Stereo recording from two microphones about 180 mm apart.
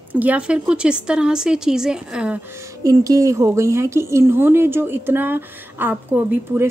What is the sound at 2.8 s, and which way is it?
A woman's voice, 20° right (ahead or behind).